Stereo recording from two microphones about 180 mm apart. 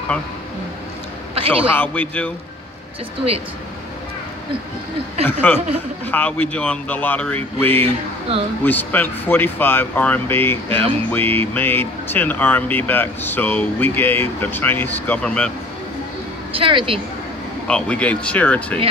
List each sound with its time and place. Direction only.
1.3 s a sound: 30° right (ahead or behind)
1.8 s speech: 10° left (ahead or behind)
5.2 s speech: 10° left (ahead or behind)
7.8 s a sound: 30° right (ahead or behind)
8.6 s speech: 10° left (ahead or behind)
16.5 s a woman's voice: 30° right (ahead or behind)
17.6 s speech: 5° left (ahead or behind)